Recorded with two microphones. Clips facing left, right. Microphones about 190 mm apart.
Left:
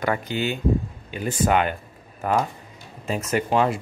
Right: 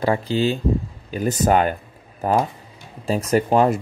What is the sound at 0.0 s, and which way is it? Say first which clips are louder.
Speech: right 5 dB; 30° right (ahead or behind).